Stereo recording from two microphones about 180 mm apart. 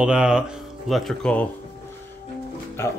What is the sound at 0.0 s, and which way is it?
Speech, 5° right (ahead or behind).